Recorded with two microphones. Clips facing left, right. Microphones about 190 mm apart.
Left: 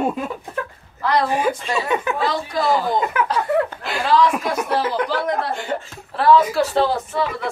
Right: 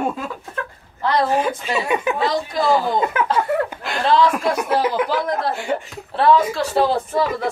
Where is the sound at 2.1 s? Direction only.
20° right (ahead or behind).